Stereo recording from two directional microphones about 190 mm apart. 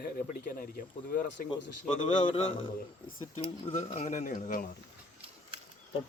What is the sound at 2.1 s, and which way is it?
Speech, 30° left (ahead or behind).